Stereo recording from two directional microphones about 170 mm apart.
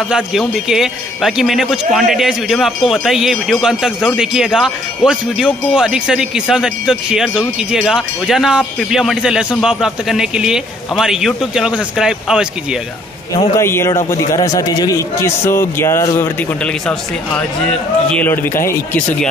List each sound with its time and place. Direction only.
0.1 s speech: 5° right (ahead or behind)
13.6 s a man's voice: 15° left (ahead or behind)